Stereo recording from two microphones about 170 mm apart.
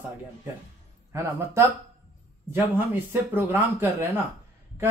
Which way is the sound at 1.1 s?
15° right (ahead or behind).